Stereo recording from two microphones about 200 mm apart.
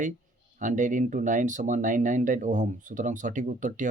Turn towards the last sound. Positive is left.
turn(degrees=-40)  # may be behind; listen again after turning